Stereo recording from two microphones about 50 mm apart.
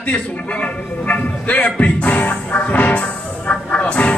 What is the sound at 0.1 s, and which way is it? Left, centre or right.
A man's voice, left.